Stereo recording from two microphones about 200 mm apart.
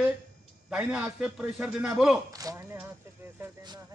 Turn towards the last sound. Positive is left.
turn(degrees=-15)  # may be behind; listen again after turning